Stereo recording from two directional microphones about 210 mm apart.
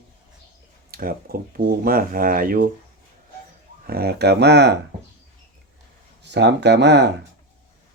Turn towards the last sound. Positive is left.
turn(degrees=-55)  # may be behind; listen again after turning